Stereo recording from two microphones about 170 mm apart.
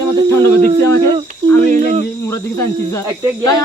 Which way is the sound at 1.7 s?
45° right (ahead or behind).